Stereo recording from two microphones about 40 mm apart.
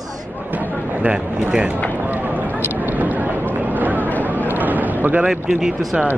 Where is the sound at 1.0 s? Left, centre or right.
Right.